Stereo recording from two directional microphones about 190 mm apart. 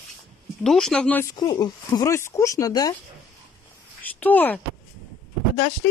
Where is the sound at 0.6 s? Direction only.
Centre (ahead or behind).